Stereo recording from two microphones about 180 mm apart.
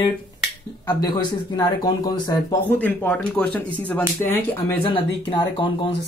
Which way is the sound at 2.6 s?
10° left (ahead or behind).